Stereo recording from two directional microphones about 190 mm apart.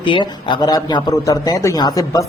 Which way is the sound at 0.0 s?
25° left (ahead or behind).